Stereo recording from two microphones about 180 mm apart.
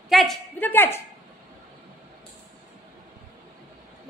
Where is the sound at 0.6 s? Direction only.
10° left (ahead or behind).